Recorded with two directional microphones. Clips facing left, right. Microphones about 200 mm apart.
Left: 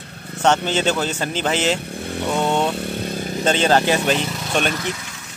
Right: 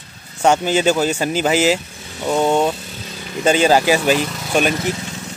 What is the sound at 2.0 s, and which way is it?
Motorcycle, 55° left (ahead or behind).